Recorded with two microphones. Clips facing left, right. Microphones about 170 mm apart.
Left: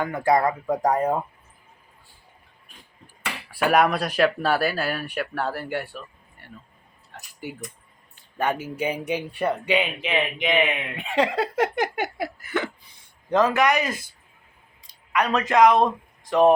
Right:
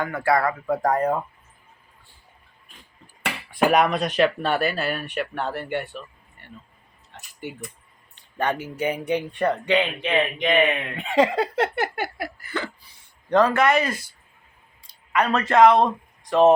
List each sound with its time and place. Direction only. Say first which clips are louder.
0.0 s speech: left 1 dB; 15° left (ahead or behind)
3.7 s speech: left 2 dB; 5° left (ahead or behind)
8.4 s speech: even; 10° left (ahead or behind)
11.5 s speech: left 1 dB; 15° left (ahead or behind)
13.3 s speech: right 2 dB; centre (ahead or behind)
13.6 s speech: right 1 dB; 15° left (ahead or behind)
15.4 s speech: right 2 dB; centre (ahead or behind)
16.3 s speech: right 1 dB; 20° right (ahead or behind)